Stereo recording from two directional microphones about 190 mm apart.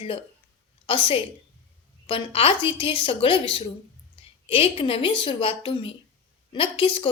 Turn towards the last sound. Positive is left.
turn(degrees=25)  # may be behind; listen again after turning